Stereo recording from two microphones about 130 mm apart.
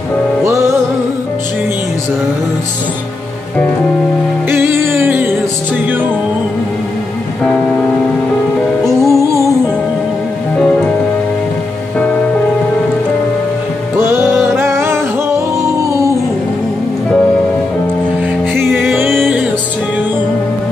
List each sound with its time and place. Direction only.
0.4 s music: 25° right (ahead or behind)
4.5 s music: 20° right (ahead or behind)
8.8 s music: 20° right (ahead or behind)
13.9 s music: 20° right (ahead or behind)
19.0 s music: centre (ahead or behind)